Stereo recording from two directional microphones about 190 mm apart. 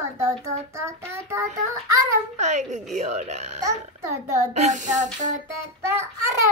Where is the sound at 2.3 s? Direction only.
40° right (ahead or behind).